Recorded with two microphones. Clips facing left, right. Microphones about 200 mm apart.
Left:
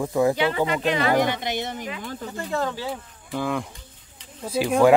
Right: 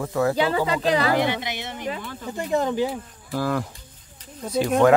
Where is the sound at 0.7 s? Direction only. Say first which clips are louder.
Right 1 dB; 35° right (ahead or behind).